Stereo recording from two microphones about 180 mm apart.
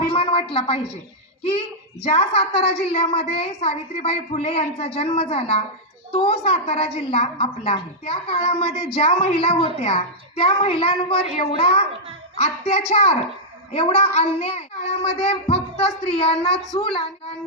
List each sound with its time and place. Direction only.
0.2 s a woman's voice: 30° left (ahead or behind)
2.0 s a woman's voice: 35° left (ahead or behind)